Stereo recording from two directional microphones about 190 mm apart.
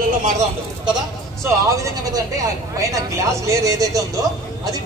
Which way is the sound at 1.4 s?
15° right (ahead or behind).